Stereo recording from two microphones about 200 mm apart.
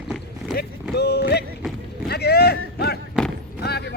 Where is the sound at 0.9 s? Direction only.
55° left (ahead or behind).